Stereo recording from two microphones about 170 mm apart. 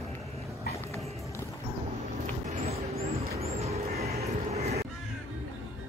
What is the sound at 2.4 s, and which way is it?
Vehicle, 40° right (ahead or behind).